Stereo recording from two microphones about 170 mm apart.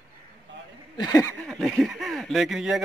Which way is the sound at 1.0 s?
20° left (ahead or behind).